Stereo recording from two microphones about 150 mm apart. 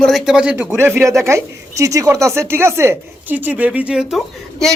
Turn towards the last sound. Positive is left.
turn(degrees=0)  # may be behind; listen again after turning